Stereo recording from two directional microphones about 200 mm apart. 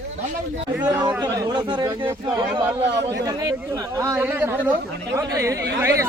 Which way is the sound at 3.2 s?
15° right (ahead or behind).